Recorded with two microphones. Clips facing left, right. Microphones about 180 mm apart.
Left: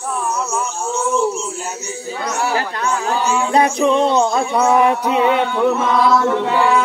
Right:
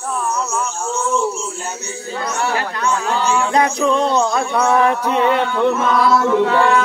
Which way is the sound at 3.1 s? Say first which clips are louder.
Even; 10° left (ahead or behind).